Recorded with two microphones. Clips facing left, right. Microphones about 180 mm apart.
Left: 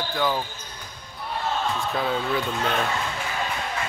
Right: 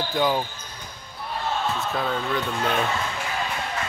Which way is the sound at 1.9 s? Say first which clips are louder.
Left 2 dB; 5° left (ahead or behind).